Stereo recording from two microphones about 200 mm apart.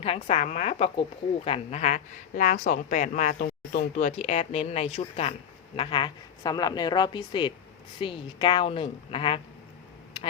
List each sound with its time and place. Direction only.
0.0 s a woman's voice: 30° left (ahead or behind)